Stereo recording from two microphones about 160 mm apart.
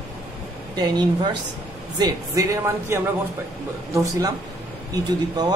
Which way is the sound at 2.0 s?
20° right (ahead or behind).